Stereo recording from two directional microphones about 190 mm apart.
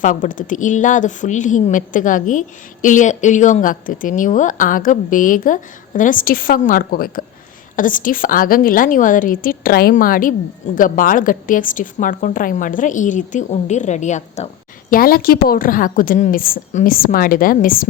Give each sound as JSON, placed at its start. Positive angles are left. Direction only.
{"t": 0.0, "sound": "a woman's voice", "side_deg": 45}
{"t": 14.8, "sound": "a woman's voice", "side_deg": 50}